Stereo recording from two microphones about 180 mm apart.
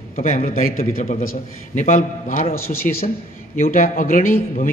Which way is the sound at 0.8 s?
40° left (ahead or behind).